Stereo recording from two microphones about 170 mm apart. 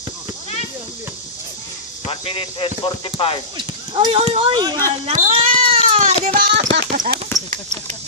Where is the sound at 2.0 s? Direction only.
30° left (ahead or behind).